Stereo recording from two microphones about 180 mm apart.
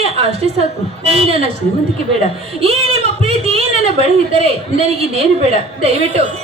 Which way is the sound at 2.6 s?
35° right (ahead or behind).